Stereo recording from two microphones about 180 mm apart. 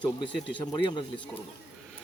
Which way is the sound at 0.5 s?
25° left (ahead or behind).